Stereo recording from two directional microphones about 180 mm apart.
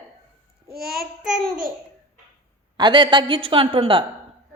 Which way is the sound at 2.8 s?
25° right (ahead or behind).